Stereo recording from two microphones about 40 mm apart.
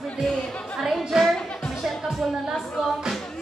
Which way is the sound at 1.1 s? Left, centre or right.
Centre.